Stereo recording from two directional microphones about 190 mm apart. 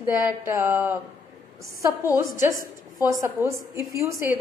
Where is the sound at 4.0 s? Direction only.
15° right (ahead or behind).